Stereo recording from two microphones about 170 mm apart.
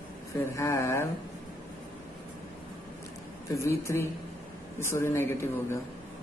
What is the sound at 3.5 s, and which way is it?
Speech, 15° left (ahead or behind).